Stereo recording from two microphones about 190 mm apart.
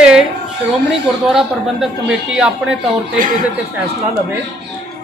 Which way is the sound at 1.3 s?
Centre (ahead or behind).